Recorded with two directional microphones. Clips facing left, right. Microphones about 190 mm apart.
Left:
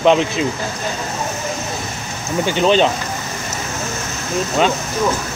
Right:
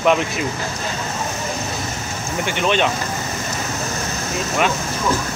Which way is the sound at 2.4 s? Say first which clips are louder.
Left 5 dB; 35° left (ahead or behind).